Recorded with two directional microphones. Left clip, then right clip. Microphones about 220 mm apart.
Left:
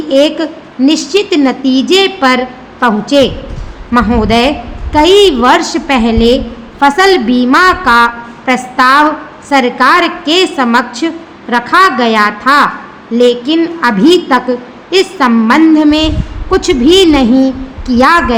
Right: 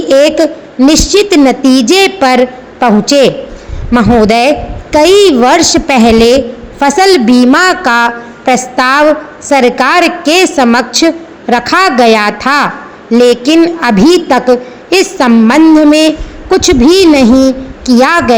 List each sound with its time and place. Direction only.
0.1 s a woman's voice: 25° right (ahead or behind)